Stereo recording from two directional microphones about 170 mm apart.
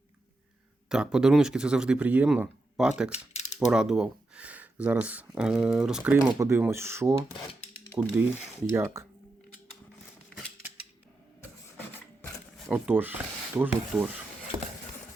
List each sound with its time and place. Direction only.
0.9 s speech: 5° right (ahead or behind)
3.1 s mechanisms: 45° left (ahead or behind)
3.7 s speech: 5° right (ahead or behind)
12.6 s speech: 10° right (ahead or behind)